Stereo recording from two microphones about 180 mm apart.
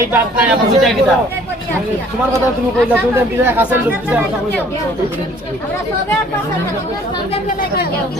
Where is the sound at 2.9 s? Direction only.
10° right (ahead or behind).